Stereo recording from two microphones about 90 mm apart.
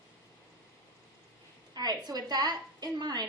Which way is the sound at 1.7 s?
50° right (ahead or behind).